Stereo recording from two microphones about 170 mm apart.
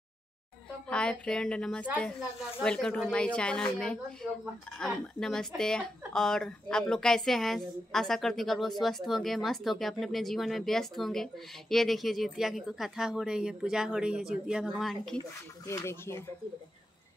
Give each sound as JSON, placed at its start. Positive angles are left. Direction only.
{"t": 0.8, "sound": "speech", "side_deg": 5}
{"t": 15.6, "sound": "speech", "side_deg": 15}